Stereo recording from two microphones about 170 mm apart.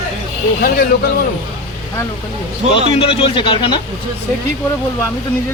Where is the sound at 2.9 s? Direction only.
35° left (ahead or behind).